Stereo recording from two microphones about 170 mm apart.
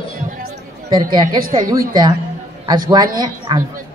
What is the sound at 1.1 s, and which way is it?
A woman's voice, 25° right (ahead or behind).